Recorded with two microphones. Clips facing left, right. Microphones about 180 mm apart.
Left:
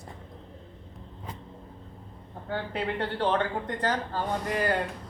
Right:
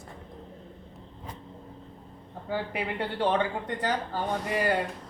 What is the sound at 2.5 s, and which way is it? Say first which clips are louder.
Speech: even; 10° right (ahead or behind).